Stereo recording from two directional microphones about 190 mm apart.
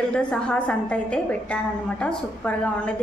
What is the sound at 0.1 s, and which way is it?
A woman's voice, 5° left (ahead or behind).